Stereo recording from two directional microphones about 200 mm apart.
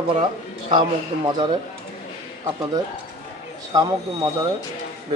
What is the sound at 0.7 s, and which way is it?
Speech, 25° right (ahead or behind).